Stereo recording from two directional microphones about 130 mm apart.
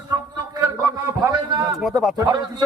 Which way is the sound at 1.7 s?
Centre (ahead or behind).